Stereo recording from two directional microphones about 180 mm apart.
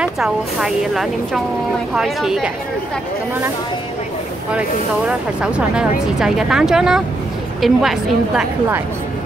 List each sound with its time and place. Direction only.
0.0 s speech: 5° right (ahead or behind)
4.5 s speech: 5° right (ahead or behind)